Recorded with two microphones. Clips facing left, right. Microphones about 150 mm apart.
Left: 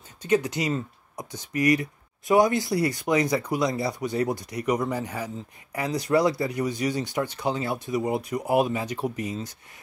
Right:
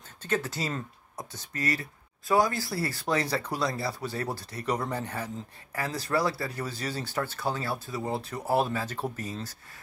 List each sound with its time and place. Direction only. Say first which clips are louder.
0.2 s speech: left 7 dB; 15° left (ahead or behind)